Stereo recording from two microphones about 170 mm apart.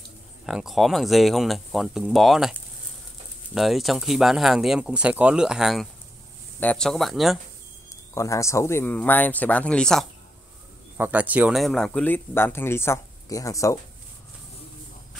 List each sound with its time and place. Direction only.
0.5 s speech: centre (ahead or behind)
3.5 s speech: centre (ahead or behind)
7.9 s speech: 20° left (ahead or behind)
11.0 s speech: 10° right (ahead or behind); by 13.7 s 20° left (ahead or behind)